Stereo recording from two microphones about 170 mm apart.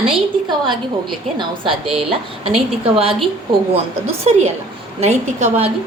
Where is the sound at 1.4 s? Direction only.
30° right (ahead or behind).